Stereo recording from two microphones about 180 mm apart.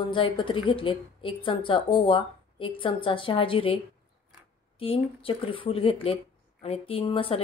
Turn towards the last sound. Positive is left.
turn(degrees=30)  # may be behind; listen again after turning